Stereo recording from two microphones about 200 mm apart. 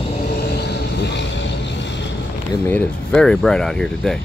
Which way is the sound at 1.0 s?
60° left (ahead or behind).